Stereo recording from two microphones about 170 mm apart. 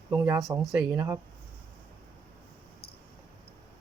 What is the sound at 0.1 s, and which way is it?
Speech, 15° right (ahead or behind).